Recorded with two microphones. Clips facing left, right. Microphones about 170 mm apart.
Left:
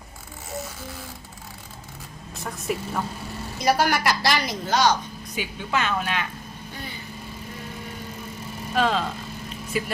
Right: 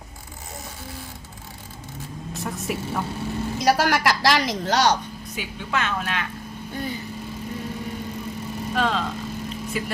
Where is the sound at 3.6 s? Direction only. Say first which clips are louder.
Right 1 dB; 90° right; by 4.9 s 75° right (ahead or behind).